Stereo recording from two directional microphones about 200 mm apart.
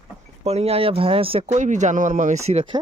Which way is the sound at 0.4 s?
30° right (ahead or behind).